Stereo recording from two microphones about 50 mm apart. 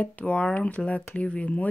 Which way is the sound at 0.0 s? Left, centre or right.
Left.